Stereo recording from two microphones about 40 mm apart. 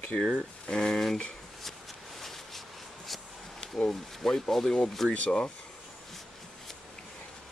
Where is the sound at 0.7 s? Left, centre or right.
Centre.